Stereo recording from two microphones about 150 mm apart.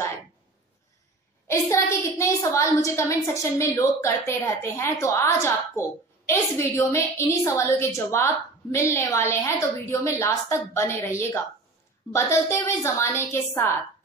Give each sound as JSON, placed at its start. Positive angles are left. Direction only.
{"t": 1.5, "sound": "a woman's voice", "side_deg": 20}